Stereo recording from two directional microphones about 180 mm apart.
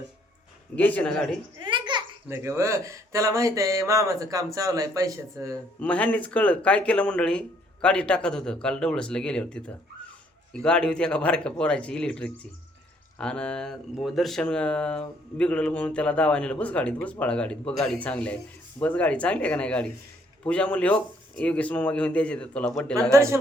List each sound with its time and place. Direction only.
0.8 s speech: 10° left (ahead or behind)
1.5 s a sound: 25° right (ahead or behind)
2.2 s speech: 15° right (ahead or behind)
5.8 s speech: 10° left (ahead or behind)
23.1 s speech: 15° right (ahead or behind)